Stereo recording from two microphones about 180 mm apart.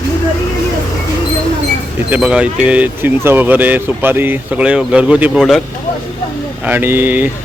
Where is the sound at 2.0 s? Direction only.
5° right (ahead or behind).